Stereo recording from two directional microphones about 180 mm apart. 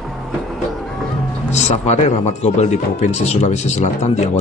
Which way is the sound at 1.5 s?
40° left (ahead or behind).